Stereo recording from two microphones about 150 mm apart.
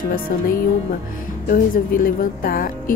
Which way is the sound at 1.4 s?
70° left (ahead or behind).